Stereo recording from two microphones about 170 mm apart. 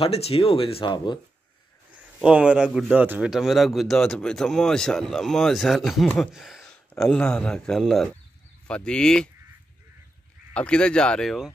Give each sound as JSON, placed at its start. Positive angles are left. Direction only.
{"t": 0.0, "sound": "speech", "side_deg": 35}
{"t": 2.2, "sound": "speech", "side_deg": -5}
{"t": 10.5, "sound": "speech", "side_deg": 5}